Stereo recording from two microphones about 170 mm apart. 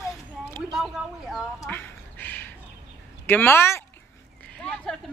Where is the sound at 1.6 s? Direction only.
10° left (ahead or behind).